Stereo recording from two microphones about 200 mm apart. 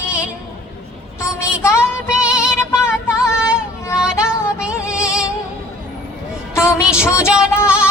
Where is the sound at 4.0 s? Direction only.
5° right (ahead or behind).